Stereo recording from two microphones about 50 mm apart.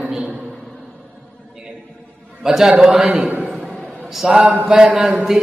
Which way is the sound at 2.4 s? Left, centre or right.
Centre.